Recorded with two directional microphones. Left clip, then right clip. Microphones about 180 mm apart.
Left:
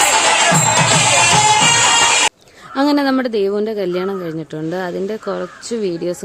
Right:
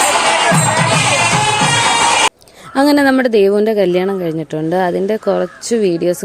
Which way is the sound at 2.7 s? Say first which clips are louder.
Right 4 dB; 30° right (ahead or behind).